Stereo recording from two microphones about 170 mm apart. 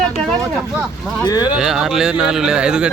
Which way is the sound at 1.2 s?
25° left (ahead or behind).